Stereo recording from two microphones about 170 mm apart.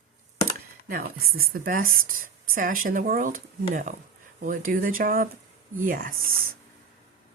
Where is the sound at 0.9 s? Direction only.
65° right (ahead or behind).